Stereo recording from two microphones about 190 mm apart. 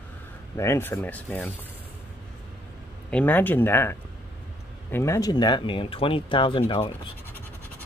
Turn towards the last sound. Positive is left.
turn(degrees=25)  # may be behind; listen again after turning